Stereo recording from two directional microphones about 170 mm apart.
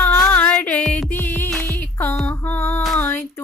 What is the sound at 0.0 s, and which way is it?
Music, 10° left (ahead or behind).